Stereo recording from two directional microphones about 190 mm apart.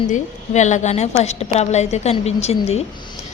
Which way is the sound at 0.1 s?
40° left (ahead or behind).